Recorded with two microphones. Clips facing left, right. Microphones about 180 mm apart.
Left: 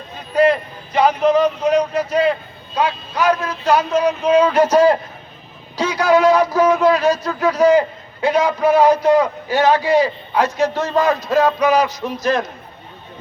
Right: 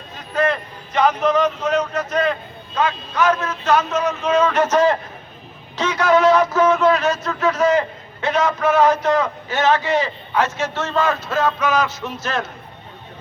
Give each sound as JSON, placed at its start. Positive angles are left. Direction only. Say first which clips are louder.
{"t": 0.3, "sound": "a sound", "louder": "left 5 dB", "side_deg": 10}
{"t": 1.9, "sound": "a man's voice", "louder": "left 3 dB", "side_deg": 10}
{"t": 5.7, "sound": "a sound", "louder": "left 2 dB", "side_deg": 10}
{"t": 6.7, "sound": "speech", "louder": "left 2 dB", "side_deg": 35}
{"t": 7.7, "sound": "a man's voice", "louder": "left 4 dB", "side_deg": 10}
{"t": 10.8, "sound": "speech", "louder": "left 3 dB", "side_deg": 35}
{"t": 11.3, "sound": "a man's voice", "louder": "left 5 dB", "side_deg": 15}
{"t": 11.6, "sound": "speech", "louder": "left 4 dB", "side_deg": 35}
{"t": 11.9, "sound": "a man's voice", "louder": "left 4 dB", "side_deg": 15}